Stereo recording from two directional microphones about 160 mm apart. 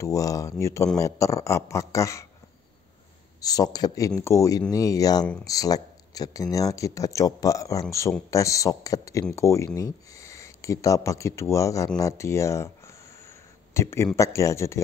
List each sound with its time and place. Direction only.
0.0 s speech: 20° left (ahead or behind)
3.3 s speech: 25° left (ahead or behind)